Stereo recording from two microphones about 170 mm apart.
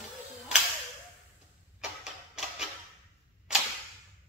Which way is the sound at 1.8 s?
5° right (ahead or behind).